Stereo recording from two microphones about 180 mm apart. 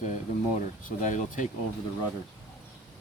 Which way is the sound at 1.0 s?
45° left (ahead or behind).